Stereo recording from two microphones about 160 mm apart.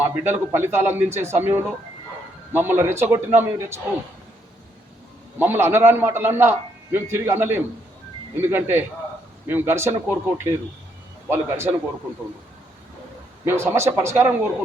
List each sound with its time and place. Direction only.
0.0 s a man's voice: 15° right (ahead or behind)
5.4 s a man's voice: 15° right (ahead or behind)
13.4 s a man's voice: 15° right (ahead or behind)